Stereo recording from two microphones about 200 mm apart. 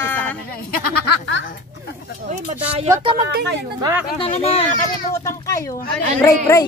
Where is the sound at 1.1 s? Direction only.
60° left (ahead or behind).